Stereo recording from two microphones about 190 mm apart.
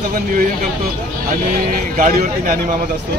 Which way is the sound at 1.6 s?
45° right (ahead or behind).